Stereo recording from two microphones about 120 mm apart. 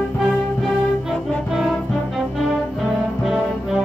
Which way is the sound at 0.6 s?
Centre (ahead or behind).